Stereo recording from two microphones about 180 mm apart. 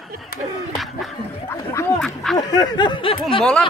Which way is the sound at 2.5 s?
25° left (ahead or behind).